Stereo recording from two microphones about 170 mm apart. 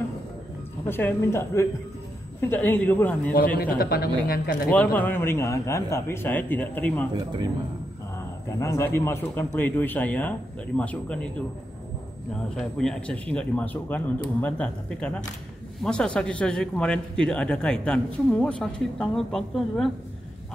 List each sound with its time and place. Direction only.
0.8 s speech: 10° left (ahead or behind)
3.5 s speech: 60° left (ahead or behind)
4.6 s speech: 10° left (ahead or behind)
7.2 s speech: 25° right (ahead or behind)
8.5 s speech: 15° left (ahead or behind)
12.5 s speech: 5° left (ahead or behind)